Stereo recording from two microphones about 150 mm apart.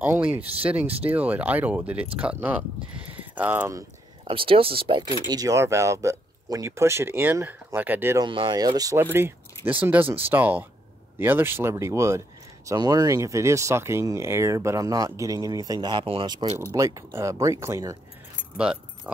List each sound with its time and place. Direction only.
0.0 s speech: 10° right (ahead or behind)
4.2 s speech: 35° right (ahead or behind); by 8.2 s 15° right (ahead or behind)
8.2 s speech: 35° right (ahead or behind)
16.7 s speech: 20° right (ahead or behind)
18.6 s speech: 5° right (ahead or behind)